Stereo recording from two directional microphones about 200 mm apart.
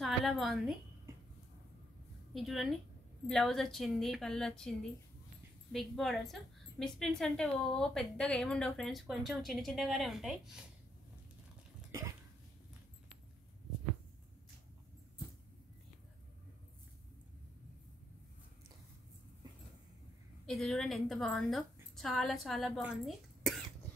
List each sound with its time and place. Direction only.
0.0 s a woman's voice: centre (ahead or behind)
2.3 s a woman's voice: centre (ahead or behind)
20.4 s a woman's voice: centre (ahead or behind)